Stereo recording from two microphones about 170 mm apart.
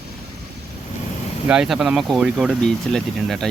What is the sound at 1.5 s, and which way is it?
Speech, 5° right (ahead or behind).